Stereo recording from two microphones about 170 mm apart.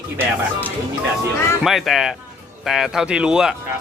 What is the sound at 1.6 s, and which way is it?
Speech, centre (ahead or behind).